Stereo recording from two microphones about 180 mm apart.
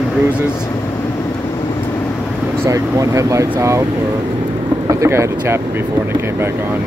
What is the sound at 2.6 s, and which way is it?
Speech, 20° right (ahead or behind).